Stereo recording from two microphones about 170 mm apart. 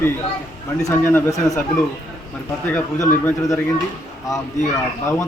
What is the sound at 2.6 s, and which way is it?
Speech, 10° left (ahead or behind).